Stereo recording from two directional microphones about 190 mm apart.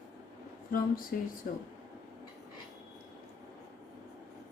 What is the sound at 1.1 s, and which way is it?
Speech, 50° left (ahead or behind).